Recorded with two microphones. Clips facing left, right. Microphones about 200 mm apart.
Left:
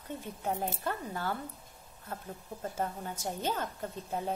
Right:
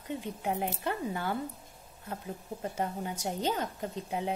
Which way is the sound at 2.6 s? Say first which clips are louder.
Right 2 dB; 15° right (ahead or behind).